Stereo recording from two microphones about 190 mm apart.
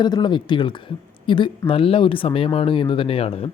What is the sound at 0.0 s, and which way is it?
Speech, 25° left (ahead or behind).